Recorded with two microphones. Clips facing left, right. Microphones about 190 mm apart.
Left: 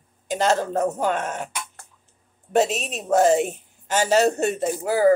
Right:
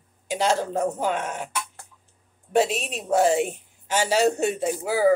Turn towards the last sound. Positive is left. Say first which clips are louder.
# left 2 dB
turn(degrees=-10)  # may be behind; listen again after turning